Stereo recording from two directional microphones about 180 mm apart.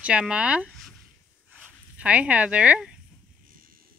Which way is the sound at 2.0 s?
5° right (ahead or behind).